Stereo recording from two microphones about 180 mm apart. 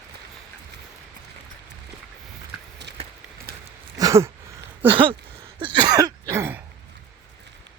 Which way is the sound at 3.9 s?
20° right (ahead or behind).